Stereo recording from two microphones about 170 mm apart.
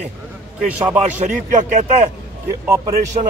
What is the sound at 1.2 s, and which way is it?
Speech, 45° right (ahead or behind).